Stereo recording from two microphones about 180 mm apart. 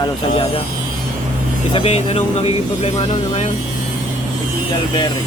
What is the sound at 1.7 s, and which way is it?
Speech, 35° left (ahead or behind).